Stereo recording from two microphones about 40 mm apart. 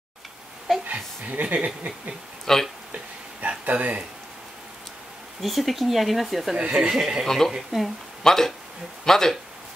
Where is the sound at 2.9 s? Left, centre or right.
Right.